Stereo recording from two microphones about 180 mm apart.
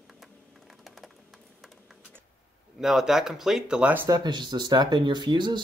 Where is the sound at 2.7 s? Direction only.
Centre (ahead or behind).